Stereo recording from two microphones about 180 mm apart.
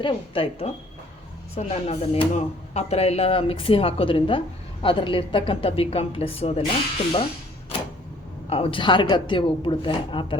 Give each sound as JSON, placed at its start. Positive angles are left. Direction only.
{"t": 0.0, "sound": "speech", "side_deg": 30}
{"t": 8.4, "sound": "speech", "side_deg": 30}